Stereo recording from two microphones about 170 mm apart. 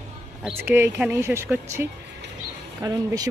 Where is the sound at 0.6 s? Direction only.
10° right (ahead or behind).